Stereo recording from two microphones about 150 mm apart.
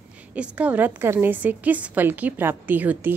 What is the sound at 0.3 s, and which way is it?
A woman's voice, 10° right (ahead or behind).